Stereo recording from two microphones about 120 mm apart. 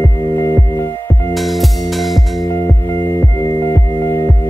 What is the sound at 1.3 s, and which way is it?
Music, centre (ahead or behind).